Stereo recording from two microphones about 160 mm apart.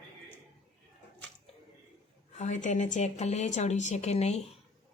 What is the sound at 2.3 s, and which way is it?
A woman's voice, 50° left (ahead or behind).